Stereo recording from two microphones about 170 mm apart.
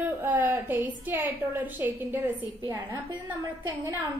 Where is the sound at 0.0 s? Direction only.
10° right (ahead or behind).